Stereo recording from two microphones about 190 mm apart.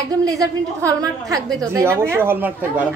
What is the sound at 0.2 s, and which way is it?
Speech, 20° right (ahead or behind).